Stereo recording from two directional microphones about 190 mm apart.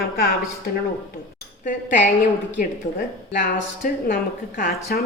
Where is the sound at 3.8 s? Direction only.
45° left (ahead or behind).